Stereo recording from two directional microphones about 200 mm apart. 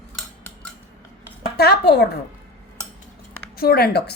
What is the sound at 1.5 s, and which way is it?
Speech, 55° left (ahead or behind).